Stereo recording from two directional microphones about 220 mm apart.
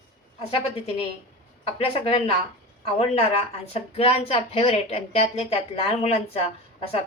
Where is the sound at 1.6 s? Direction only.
25° left (ahead or behind).